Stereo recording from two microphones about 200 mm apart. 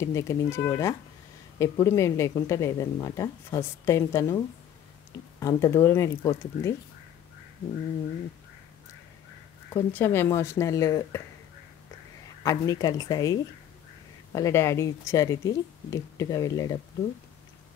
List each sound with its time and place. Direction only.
0.0 s a woman's voice: 15° left (ahead or behind)
5.4 s a woman's voice: 15° left (ahead or behind)
9.8 s a woman's voice: 10° left (ahead or behind)
12.4 s a woman's voice: 20° left (ahead or behind)